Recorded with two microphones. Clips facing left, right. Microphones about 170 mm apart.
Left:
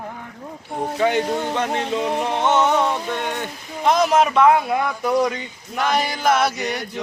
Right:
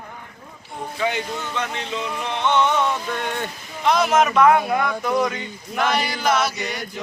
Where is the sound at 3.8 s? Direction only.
40° left (ahead or behind); by 4.8 s 25° left (ahead or behind).